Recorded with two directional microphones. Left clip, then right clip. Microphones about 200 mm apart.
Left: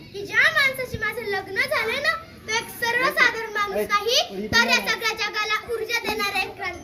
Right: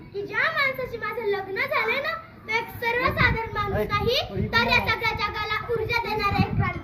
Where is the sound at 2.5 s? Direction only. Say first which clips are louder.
Left 1 dB; 30° left (ahead or behind).